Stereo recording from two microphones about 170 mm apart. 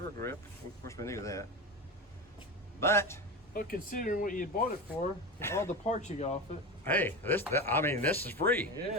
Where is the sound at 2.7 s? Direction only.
15° left (ahead or behind).